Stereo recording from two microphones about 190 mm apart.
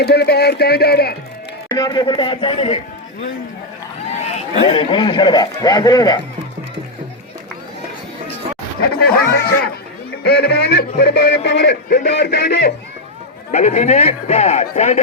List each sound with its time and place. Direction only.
0.0 s a man's voice: 55° left (ahead or behind)
1.7 s a man's voice: 20° left (ahead or behind)
4.2 s a man's voice: 35° left (ahead or behind)
9.0 s speech: 10° left (ahead or behind)
10.2 s a man's voice: 60° left (ahead or behind)
13.5 s speech: 35° left (ahead or behind)